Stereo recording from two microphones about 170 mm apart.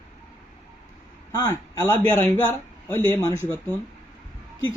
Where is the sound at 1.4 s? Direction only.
15° left (ahead or behind).